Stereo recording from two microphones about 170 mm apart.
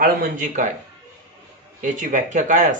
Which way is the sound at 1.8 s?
50° right (ahead or behind).